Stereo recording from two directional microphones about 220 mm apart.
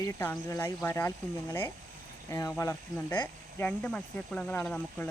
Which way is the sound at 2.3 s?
15° left (ahead or behind).